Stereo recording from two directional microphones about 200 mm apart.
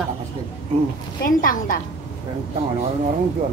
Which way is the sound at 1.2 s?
45° left (ahead or behind).